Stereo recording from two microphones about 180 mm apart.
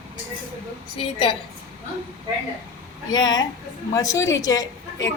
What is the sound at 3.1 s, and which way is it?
A woman's voice, 20° left (ahead or behind).